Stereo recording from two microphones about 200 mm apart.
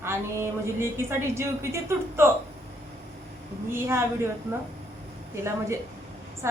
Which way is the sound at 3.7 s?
10° right (ahead or behind).